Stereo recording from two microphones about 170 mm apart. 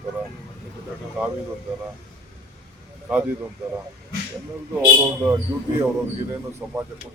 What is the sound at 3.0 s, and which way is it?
Speech, 10° right (ahead or behind).